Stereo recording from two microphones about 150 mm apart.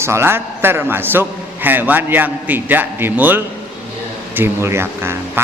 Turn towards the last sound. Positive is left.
turn(degrees=-15)  # may be behind; listen again after turning